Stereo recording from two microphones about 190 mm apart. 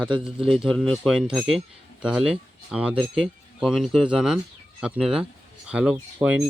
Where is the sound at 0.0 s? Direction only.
5° right (ahead or behind).